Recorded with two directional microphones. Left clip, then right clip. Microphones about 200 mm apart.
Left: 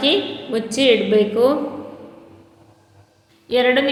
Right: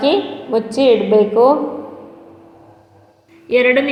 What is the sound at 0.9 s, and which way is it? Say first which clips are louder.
Speech: right 3 dB; 45° right (ahead or behind).